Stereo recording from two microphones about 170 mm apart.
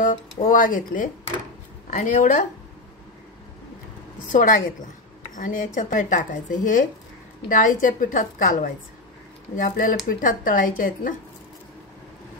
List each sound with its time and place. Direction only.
0.5 s speech: 55° left (ahead or behind)
4.3 s speech: 50° left (ahead or behind)